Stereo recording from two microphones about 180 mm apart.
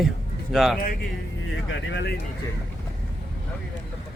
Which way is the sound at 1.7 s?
75° left (ahead or behind).